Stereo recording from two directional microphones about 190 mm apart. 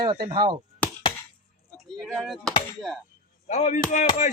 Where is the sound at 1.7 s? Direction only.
Centre (ahead or behind).